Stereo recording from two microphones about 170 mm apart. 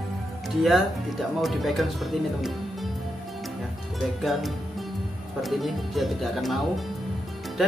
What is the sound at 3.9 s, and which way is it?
Speech, centre (ahead or behind).